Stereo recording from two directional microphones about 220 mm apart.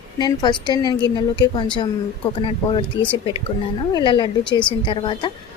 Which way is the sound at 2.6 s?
20° left (ahead or behind).